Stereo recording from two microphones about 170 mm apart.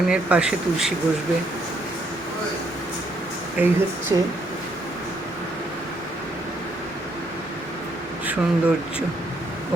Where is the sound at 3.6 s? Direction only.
10° right (ahead or behind).